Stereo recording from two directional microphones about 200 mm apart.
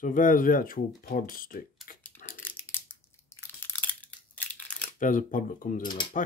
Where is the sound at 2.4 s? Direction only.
10° left (ahead or behind).